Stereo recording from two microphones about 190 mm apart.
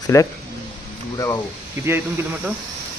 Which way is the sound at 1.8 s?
10° right (ahead or behind).